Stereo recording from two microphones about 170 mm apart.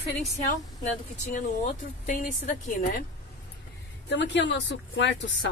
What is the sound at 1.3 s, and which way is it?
Speech, 45° left (ahead or behind).